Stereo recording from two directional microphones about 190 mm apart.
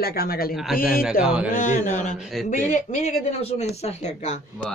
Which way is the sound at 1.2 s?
5° right (ahead or behind).